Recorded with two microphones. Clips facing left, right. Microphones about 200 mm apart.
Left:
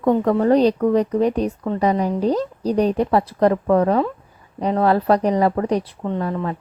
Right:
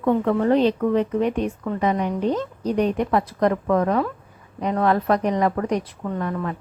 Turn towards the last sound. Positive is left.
turn(degrees=30)  # may be behind; listen again after turning